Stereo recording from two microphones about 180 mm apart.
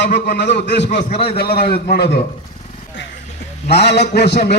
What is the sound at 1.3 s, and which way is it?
Speech, 60° left (ahead or behind).